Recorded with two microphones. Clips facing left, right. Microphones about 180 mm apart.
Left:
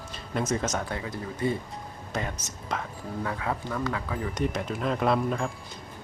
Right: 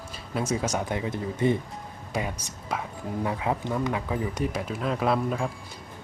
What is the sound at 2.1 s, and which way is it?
Speech, 10° right (ahead or behind).